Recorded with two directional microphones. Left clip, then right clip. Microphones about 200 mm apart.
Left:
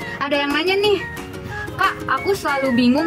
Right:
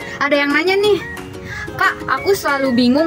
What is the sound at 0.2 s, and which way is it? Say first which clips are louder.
A woman's voice: right 5 dB; 20° right (ahead or behind).